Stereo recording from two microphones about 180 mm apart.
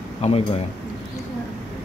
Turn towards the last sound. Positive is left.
turn(degrees=35)  # may be behind; listen again after turning